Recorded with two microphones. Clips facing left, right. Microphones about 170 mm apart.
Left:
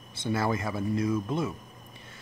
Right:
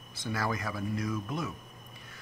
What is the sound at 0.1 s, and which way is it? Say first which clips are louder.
Speech: left 5 dB; 25° left (ahead or behind).